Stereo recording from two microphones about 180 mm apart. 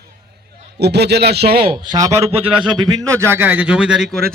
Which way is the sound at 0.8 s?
65° right (ahead or behind).